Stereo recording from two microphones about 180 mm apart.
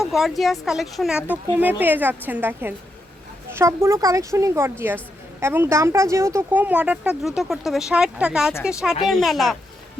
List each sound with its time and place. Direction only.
0.0 s a woman's voice: centre (ahead or behind)